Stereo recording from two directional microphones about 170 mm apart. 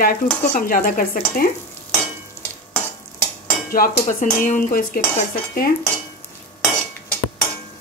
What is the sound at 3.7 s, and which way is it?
Dishes, 60° left (ahead or behind).